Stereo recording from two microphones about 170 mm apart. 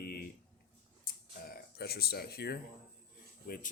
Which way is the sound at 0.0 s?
60° left (ahead or behind).